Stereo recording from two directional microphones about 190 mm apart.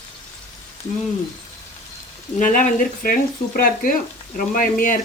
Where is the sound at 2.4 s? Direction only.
45° left (ahead or behind).